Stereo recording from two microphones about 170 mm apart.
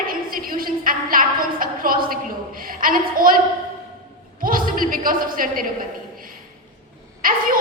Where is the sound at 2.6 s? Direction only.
55° right (ahead or behind).